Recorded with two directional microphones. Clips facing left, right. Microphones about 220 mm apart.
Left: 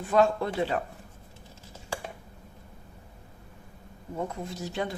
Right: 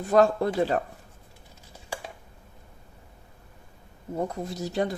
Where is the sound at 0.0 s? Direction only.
40° right (ahead or behind).